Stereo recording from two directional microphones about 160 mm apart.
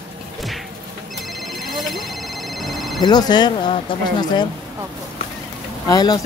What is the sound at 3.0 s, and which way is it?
Speech, 25° left (ahead or behind).